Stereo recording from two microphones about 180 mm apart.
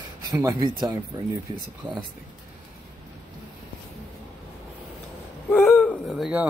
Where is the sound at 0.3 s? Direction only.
20° right (ahead or behind).